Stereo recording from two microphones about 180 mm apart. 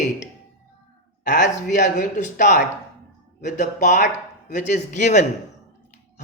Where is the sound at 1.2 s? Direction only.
45° left (ahead or behind).